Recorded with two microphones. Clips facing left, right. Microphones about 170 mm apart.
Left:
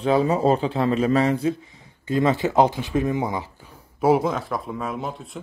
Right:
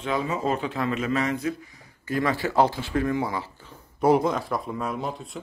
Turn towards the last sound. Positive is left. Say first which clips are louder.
# left 1 dB
turn(degrees=0)  # may be behind; listen again after turning